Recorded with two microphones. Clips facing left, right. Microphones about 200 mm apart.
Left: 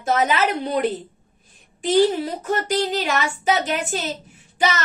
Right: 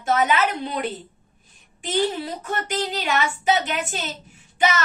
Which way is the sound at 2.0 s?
35° left (ahead or behind).